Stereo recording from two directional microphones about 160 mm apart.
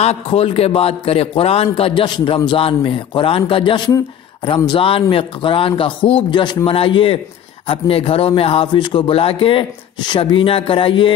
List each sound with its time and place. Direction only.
0.0 s a man's voice: 40° left (ahead or behind)